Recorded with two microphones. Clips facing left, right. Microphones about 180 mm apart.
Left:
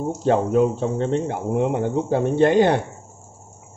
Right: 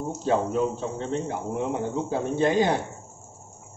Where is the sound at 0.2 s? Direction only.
60° left (ahead or behind).